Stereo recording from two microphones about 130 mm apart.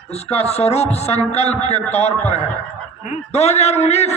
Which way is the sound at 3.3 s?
55° left (ahead or behind).